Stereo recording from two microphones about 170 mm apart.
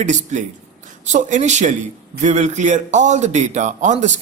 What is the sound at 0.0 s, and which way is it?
A man's voice, 45° right (ahead or behind).